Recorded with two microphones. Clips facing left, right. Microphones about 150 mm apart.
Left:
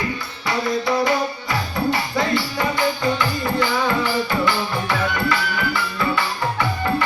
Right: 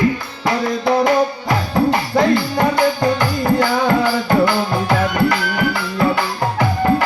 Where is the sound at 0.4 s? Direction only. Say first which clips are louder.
Right 4 dB; 55° right (ahead or behind).